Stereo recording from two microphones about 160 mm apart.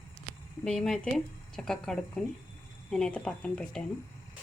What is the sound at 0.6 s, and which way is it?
Speech, 5° left (ahead or behind).